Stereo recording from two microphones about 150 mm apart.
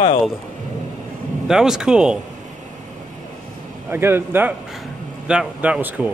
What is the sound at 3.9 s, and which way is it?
A man's voice, 15° right (ahead or behind).